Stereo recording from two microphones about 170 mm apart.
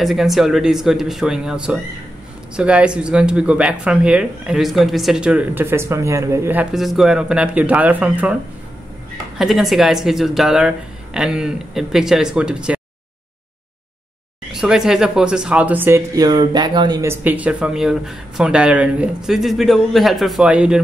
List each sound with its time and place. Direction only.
0.0 s speech: centre (ahead or behind)
9.4 s speech: centre (ahead or behind)
14.5 s speech: 5° right (ahead or behind)